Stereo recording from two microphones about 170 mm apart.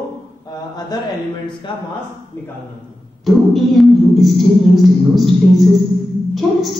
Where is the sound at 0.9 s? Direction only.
25° left (ahead or behind).